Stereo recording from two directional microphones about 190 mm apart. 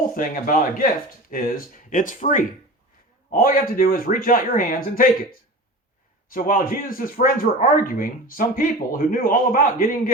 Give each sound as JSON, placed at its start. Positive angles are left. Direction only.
{"t": 0.1, "sound": "speech", "side_deg": 45}
{"t": 6.2, "sound": "speech", "side_deg": 50}